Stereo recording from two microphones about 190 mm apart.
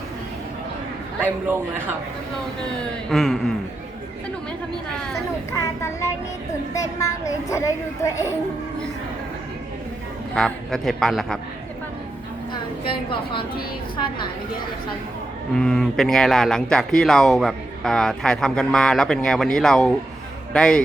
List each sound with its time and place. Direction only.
1.2 s a man's voice: 10° right (ahead or behind)
2.7 s speech: centre (ahead or behind)
6.7 s a child's voice: 15° left (ahead or behind)
10.3 s speech: centre (ahead or behind)
15.5 s speech: 5° left (ahead or behind)